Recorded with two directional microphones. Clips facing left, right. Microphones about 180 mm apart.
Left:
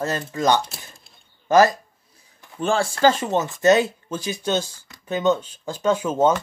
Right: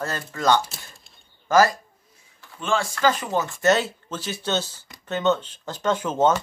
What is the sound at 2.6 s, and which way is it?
Speech, 35° left (ahead or behind).